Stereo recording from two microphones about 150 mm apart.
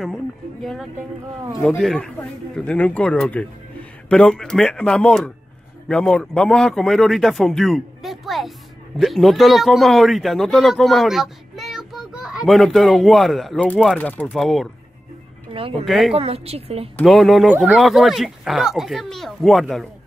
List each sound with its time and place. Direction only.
0.0 s speech: centre (ahead or behind)
15.5 s a woman's voice: 40° right (ahead or behind)
15.8 s speech: centre (ahead or behind)
16.2 s a woman's voice: 40° right (ahead or behind)
16.9 s speech: centre (ahead or behind)